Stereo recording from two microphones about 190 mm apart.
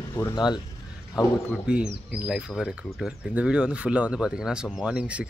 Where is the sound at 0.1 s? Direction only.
20° left (ahead or behind).